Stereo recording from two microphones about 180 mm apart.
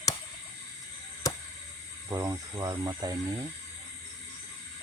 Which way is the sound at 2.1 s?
20° right (ahead or behind).